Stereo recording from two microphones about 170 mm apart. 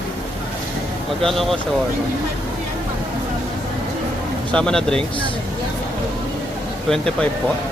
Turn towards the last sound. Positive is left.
turn(degrees=5)  # may be behind; listen again after turning